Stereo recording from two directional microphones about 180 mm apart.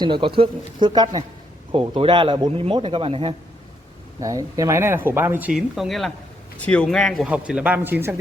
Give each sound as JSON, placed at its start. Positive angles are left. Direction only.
{"t": 0.0, "sound": "speech", "side_deg": -30}
{"t": 4.2, "sound": "speech", "side_deg": -20}